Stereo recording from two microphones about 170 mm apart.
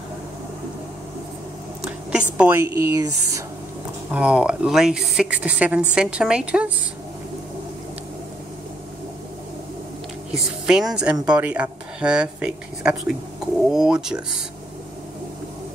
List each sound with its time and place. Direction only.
2.1 s speech: 10° right (ahead or behind)
4.1 s speech: 5° right (ahead or behind)
10.3 s speech: centre (ahead or behind)